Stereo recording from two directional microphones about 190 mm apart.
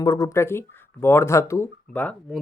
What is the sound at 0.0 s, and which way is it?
Speech, 20° left (ahead or behind).